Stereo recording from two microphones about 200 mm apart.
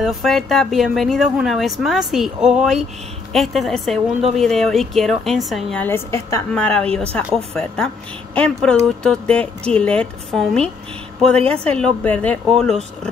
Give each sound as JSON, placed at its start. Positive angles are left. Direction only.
{"t": 0.0, "sound": "a woman's voice", "side_deg": 0}